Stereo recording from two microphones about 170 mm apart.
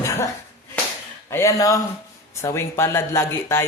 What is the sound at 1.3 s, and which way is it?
Speech, 15° left (ahead or behind).